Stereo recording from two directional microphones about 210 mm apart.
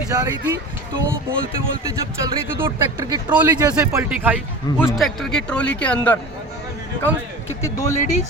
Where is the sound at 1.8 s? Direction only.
15° right (ahead or behind); by 6.1 s 5° left (ahead or behind).